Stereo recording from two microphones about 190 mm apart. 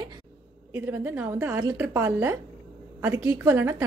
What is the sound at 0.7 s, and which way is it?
A woman's voice, 10° right (ahead or behind).